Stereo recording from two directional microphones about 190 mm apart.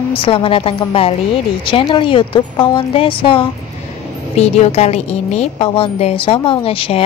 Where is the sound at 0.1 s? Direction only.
30° left (ahead or behind).